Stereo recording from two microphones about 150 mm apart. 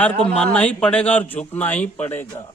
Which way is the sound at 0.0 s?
5° left (ahead or behind).